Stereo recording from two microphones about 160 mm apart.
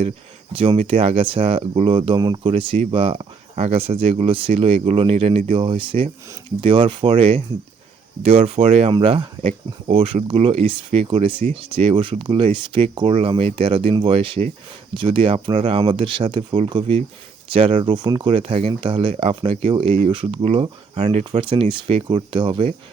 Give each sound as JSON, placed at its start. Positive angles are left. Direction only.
{"t": 0.5, "sound": "speech", "side_deg": -35}